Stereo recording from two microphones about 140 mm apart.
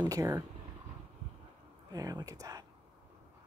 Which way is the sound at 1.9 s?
25° right (ahead or behind).